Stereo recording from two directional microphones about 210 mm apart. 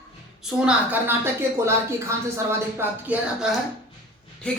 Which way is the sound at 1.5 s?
15° right (ahead or behind).